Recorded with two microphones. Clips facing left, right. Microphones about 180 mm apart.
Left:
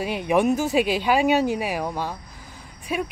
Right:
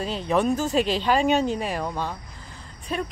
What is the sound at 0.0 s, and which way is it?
Speech, 15° left (ahead or behind).